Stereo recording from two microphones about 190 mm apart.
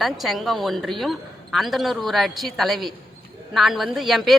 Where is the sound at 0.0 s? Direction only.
Centre (ahead or behind).